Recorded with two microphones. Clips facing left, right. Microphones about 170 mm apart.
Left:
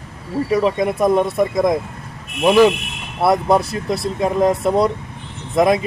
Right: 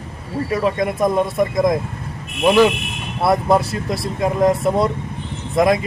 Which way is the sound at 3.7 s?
25° left (ahead or behind).